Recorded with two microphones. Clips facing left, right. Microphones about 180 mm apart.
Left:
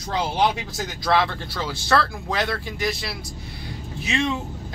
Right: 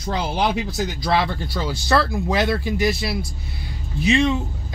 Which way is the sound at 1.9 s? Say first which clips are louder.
Right 3 dB; 10° right (ahead or behind).